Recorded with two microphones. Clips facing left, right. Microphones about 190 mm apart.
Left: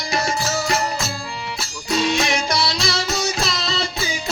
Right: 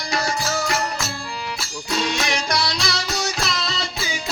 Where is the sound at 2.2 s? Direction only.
25° left (ahead or behind).